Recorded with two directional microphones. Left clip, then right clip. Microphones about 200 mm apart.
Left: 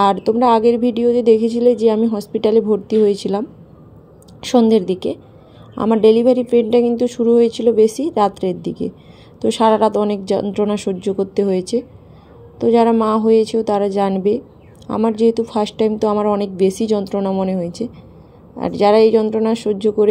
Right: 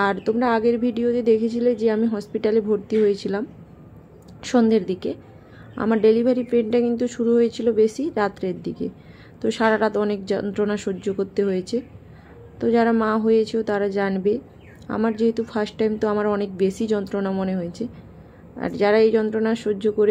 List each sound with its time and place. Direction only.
0.0 s a woman's voice: 15° left (ahead or behind)